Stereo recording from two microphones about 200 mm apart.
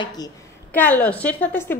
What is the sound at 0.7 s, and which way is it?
A woman's voice, 10° left (ahead or behind).